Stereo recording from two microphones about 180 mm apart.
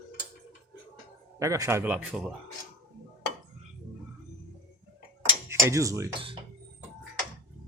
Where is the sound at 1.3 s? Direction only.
15° right (ahead or behind).